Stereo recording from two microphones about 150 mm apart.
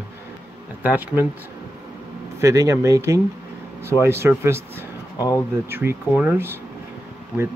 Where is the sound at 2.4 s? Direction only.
20° right (ahead or behind).